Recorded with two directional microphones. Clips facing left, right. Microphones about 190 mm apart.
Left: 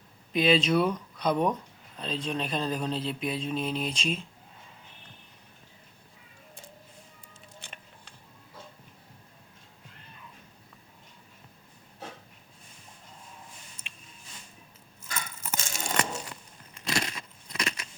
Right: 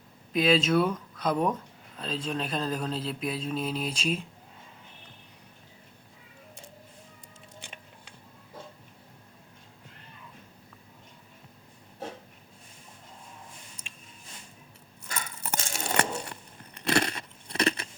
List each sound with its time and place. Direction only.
0.3 s speech: centre (ahead or behind)
7.6 s music: 10° right (ahead or behind)
15.4 s a sound: 65° right (ahead or behind)
17.6 s keys jangling: 35° right (ahead or behind)